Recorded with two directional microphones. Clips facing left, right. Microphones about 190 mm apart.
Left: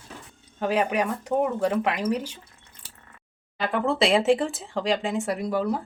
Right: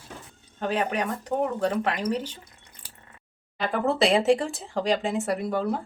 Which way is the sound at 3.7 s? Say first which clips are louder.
Even; centre (ahead or behind).